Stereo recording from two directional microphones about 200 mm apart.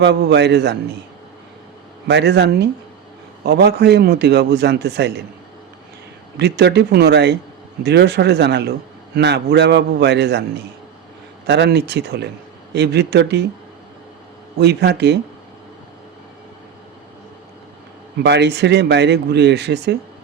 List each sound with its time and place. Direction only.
0.0 s speech: 60° right (ahead or behind)
2.0 s speech: 60° right (ahead or behind)
6.3 s speech: 55° right (ahead or behind)
11.4 s speech: 60° right (ahead or behind)
14.6 s speech: 55° right (ahead or behind)
18.2 s speech: 60° right (ahead or behind)